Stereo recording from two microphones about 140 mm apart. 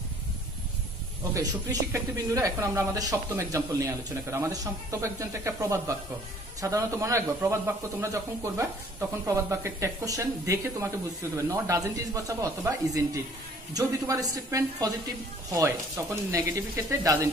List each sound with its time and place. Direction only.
1.3 s speech: 25° right (ahead or behind)
16.3 s speech: 20° right (ahead or behind)